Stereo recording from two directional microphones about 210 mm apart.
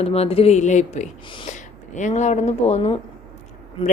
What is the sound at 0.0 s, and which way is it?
A woman's voice, 30° left (ahead or behind).